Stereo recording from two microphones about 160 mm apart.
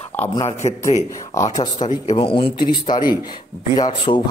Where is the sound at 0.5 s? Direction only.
45° left (ahead or behind).